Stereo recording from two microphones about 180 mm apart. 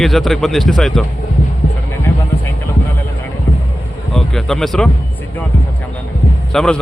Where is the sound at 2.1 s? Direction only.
10° left (ahead or behind).